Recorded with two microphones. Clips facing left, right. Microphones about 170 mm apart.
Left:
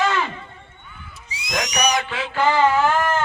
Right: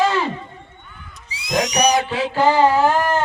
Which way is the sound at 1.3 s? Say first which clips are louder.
Right 6 dB; 35° right (ahead or behind).